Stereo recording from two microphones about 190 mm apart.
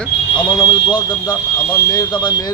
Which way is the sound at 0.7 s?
20° left (ahead or behind).